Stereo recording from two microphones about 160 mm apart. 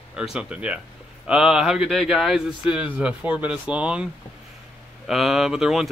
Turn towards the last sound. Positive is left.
turn(degrees=0)  # may be behind; listen again after turning